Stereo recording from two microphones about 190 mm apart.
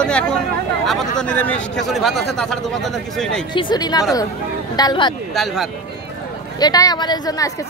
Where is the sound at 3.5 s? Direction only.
25° left (ahead or behind).